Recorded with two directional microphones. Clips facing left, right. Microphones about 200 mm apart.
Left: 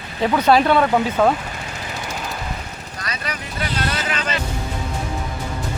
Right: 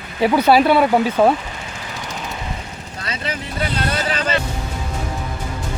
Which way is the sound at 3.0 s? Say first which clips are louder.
Right 3 dB; 25° right (ahead or behind).